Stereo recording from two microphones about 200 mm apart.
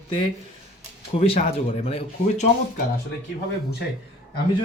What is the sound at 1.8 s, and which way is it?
Speech, 30° left (ahead or behind).